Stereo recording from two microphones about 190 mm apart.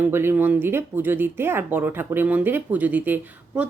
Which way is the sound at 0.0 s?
10° right (ahead or behind).